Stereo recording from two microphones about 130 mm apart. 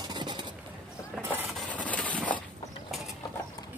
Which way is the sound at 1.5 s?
5° left (ahead or behind).